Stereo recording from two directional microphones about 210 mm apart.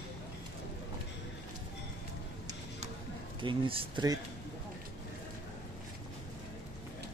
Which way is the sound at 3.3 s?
25° right (ahead or behind).